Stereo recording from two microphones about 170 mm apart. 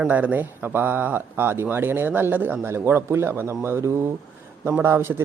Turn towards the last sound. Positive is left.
turn(degrees=-15)  # may be behind; listen again after turning